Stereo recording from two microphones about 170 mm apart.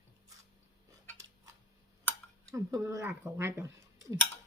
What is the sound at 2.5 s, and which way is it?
Speech, 20° right (ahead or behind).